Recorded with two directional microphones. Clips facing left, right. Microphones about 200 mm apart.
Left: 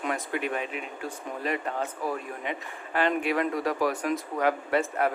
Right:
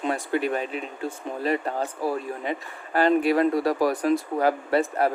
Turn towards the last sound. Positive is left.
turn(degrees=-35)  # may be behind; listen again after turning